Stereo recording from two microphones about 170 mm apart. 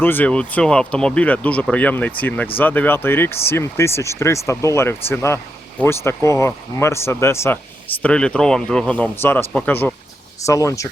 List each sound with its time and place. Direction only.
0.0 s speech: 10° left (ahead or behind)